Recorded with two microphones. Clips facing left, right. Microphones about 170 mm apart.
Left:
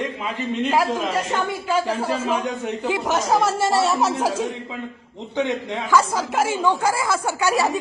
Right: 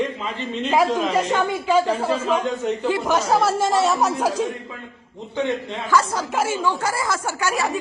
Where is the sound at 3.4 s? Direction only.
5° right (ahead or behind).